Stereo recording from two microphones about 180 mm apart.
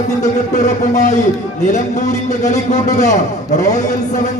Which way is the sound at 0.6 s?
40° left (ahead or behind).